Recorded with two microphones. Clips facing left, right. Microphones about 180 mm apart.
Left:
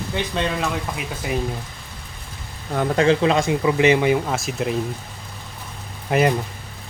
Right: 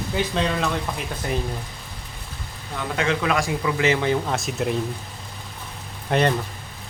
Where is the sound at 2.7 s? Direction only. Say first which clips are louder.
Left 7 dB; 45° left (ahead or behind).